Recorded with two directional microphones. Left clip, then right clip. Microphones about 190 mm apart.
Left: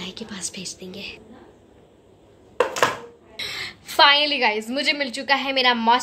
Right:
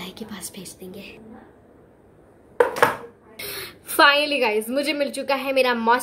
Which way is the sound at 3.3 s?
5° right (ahead or behind).